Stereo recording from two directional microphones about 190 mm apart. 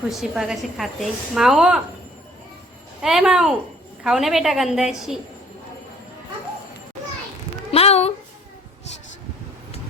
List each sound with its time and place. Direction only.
0.1 s a woman's voice: centre (ahead or behind)
3.0 s a woman's voice: centre (ahead or behind)
7.7 s a sound: 35° left (ahead or behind)